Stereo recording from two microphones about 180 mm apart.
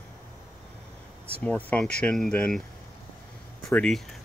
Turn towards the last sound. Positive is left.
turn(degrees=5)  # may be behind; listen again after turning